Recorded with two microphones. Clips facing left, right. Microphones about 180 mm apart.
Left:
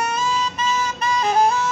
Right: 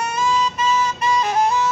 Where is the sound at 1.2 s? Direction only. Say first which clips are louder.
Left 3 dB; 30° left (ahead or behind).